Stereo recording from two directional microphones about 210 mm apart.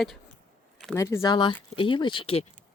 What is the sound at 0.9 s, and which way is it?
Speech, 15° left (ahead or behind).